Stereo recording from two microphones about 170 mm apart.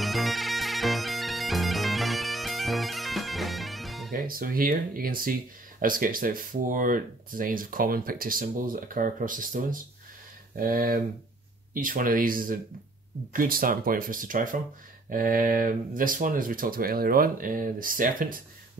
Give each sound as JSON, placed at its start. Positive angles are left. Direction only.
{"t": 0.0, "sound": "bagpipes", "side_deg": 0}
{"t": 4.1, "sound": "speech", "side_deg": -55}